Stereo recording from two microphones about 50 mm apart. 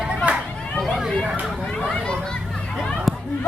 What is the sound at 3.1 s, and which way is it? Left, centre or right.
Chatter, centre.